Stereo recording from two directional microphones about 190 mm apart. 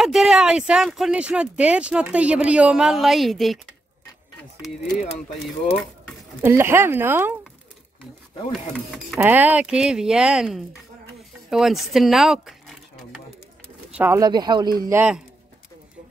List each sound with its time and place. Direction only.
0.0 s speech: centre (ahead or behind)
6.4 s speech: 10° right (ahead or behind)
8.5 s speech: centre (ahead or behind)
13.9 s speech: 15° right (ahead or behind)
15.0 s speech: 5° right (ahead or behind)